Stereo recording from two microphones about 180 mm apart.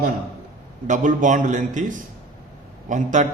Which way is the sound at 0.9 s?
45° right (ahead or behind).